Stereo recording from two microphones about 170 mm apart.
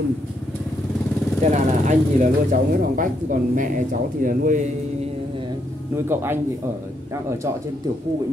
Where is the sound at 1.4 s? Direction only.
45° right (ahead or behind).